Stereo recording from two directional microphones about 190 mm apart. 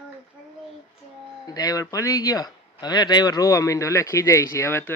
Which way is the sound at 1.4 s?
20° left (ahead or behind).